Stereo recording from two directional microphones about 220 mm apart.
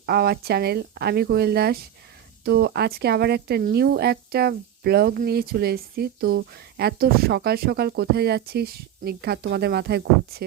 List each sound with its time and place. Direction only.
0.0 s speech: 45° right (ahead or behind)